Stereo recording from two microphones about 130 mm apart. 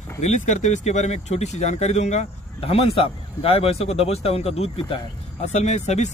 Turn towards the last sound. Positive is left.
turn(degrees=65)  # may be behind; listen again after turning